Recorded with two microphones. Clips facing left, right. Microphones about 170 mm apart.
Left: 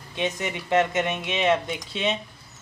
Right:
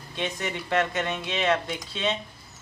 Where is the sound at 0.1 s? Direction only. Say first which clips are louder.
Left 3 dB; 15° left (ahead or behind).